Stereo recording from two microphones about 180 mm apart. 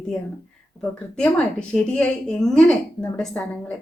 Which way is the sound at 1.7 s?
5° left (ahead or behind).